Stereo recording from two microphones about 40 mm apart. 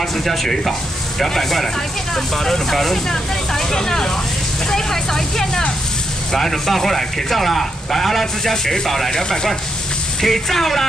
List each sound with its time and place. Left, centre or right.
0.2 s speech: centre